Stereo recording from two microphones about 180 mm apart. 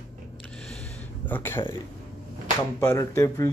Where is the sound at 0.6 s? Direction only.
10° left (ahead or behind).